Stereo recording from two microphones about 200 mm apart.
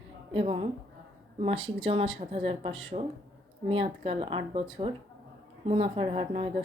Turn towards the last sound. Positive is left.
turn(degrees=-25)  # may be behind; listen again after turning